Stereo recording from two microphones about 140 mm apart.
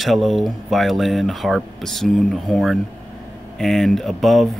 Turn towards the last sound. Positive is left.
turn(degrees=0)  # may be behind; listen again after turning